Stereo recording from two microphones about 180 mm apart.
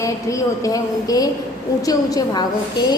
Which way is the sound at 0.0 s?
20° left (ahead or behind).